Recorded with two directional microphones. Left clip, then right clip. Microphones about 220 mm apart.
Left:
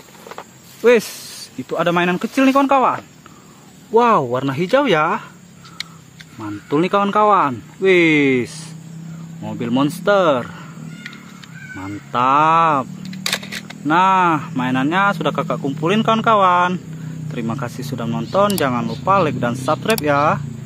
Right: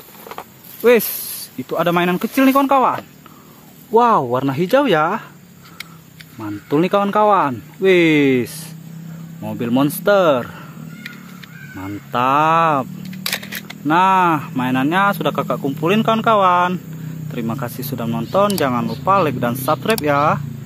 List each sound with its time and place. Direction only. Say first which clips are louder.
0.8 s speech: even; 10° right (ahead or behind)
6.4 s speech: right 1 dB; 10° right (ahead or behind)
11.8 s speech: left 1 dB; 15° right (ahead or behind)
13.3 s speech: left 1 dB; 5° right (ahead or behind)